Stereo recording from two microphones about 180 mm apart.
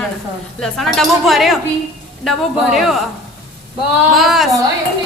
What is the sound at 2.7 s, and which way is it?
Speech, centre (ahead or behind).